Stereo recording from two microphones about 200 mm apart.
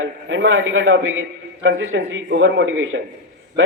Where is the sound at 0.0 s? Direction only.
70° right (ahead or behind).